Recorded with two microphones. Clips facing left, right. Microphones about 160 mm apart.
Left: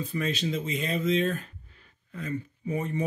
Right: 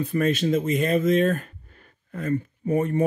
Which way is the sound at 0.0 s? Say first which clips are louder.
Right 7 dB; 55° right (ahead or behind).